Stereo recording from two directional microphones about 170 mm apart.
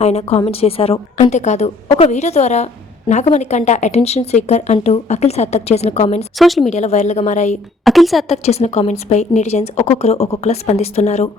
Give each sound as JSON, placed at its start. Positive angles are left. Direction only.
{"t": 0.0, "sound": "a woman's voice", "side_deg": 40}
{"t": 6.4, "sound": "a woman's voice", "side_deg": 0}
{"t": 6.7, "sound": "a woman's voice", "side_deg": 40}
{"t": 7.9, "sound": "a woman's voice", "side_deg": 0}
{"t": 8.3, "sound": "a woman's voice", "side_deg": 40}